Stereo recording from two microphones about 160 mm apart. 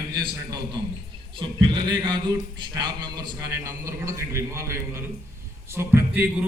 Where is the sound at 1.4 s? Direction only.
30° right (ahead or behind).